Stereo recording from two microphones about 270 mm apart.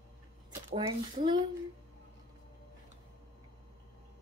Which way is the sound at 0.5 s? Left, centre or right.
Centre.